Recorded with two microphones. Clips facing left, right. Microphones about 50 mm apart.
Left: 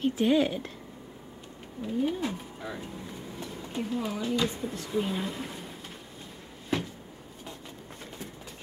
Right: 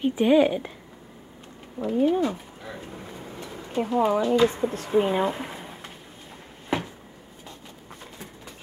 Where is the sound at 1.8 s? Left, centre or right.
Right.